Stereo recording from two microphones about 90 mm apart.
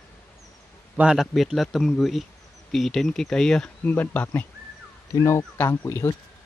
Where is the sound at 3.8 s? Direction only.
20° left (ahead or behind).